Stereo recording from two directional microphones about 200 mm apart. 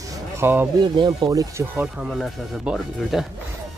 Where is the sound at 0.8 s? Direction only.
20° right (ahead or behind).